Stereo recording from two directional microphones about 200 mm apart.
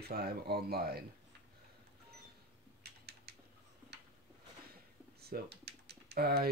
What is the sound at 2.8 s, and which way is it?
Typing, 55° right (ahead or behind).